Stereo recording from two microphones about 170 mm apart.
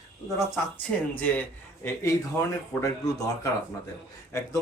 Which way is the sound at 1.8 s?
15° left (ahead or behind).